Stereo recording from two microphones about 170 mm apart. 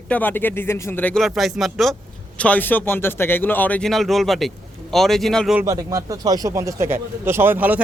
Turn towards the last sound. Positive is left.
turn(degrees=-10)  # may be behind; listen again after turning